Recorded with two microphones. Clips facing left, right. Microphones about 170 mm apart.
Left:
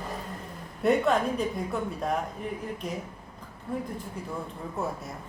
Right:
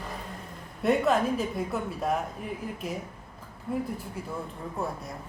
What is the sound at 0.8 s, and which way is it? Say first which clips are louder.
Speech: even; centre (ahead or behind).